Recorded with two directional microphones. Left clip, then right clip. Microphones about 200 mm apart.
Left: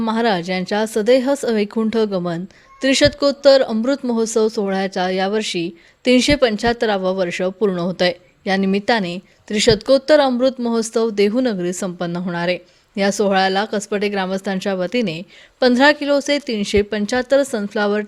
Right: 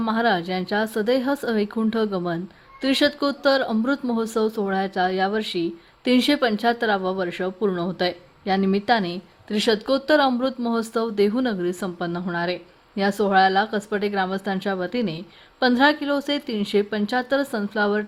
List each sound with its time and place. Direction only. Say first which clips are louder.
0.0 s speech: left 3 dB; 25° left (ahead or behind)